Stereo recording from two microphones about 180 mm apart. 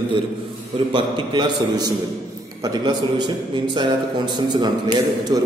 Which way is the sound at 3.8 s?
25° right (ahead or behind).